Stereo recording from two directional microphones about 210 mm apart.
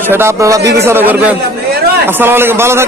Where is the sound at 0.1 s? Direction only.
10° right (ahead or behind).